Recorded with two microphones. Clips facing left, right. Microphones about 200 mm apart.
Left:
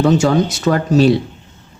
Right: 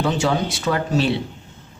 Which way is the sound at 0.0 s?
45° left (ahead or behind).